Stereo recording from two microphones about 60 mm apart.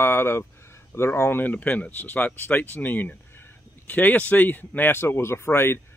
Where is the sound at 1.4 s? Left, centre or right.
Left.